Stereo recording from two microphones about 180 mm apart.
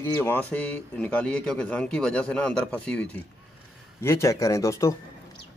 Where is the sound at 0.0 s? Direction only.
15° left (ahead or behind).